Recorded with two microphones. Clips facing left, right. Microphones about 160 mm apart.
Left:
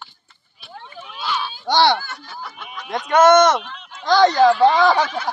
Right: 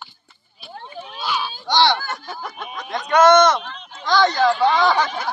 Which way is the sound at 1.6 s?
50° left (ahead or behind).